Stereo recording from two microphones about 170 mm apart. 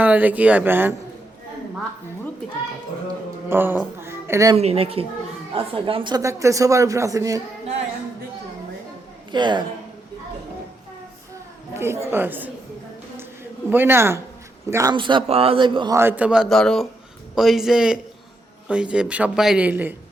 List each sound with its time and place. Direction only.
0.0 s a man's voice: 10° right (ahead or behind)
3.5 s speech: 10° right (ahead or behind)
4.5 s a man's voice: 35° right (ahead or behind); by 7.4 s 20° right (ahead or behind)
9.3 s a man's voice: 25° right (ahead or behind)
11.7 s a man's voice: 15° right (ahead or behind)
13.7 s a man's voice: 15° right (ahead or behind)
16.0 s a man's voice: 10° right (ahead or behind)